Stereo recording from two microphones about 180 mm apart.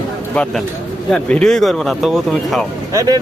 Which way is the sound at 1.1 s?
5° left (ahead or behind).